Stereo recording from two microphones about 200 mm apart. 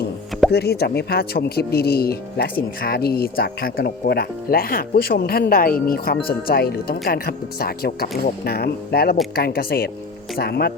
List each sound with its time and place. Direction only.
0.5 s speech: 55° left (ahead or behind)